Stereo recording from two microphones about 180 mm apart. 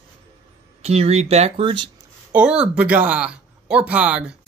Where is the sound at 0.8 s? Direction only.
35° right (ahead or behind).